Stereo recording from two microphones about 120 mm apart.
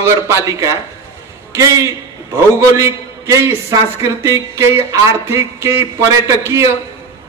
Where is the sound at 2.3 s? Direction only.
25° right (ahead or behind).